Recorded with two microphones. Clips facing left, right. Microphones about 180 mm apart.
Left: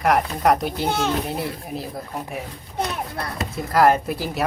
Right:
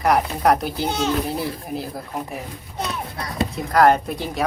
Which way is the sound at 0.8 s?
55° left (ahead or behind).